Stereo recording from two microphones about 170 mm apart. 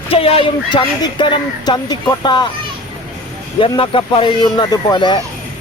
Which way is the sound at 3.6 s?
30° left (ahead or behind).